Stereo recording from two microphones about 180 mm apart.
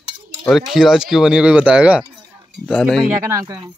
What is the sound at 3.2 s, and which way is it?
Speech, 20° right (ahead or behind).